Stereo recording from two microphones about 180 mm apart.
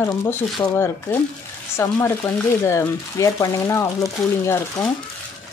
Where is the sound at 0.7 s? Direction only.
15° left (ahead or behind).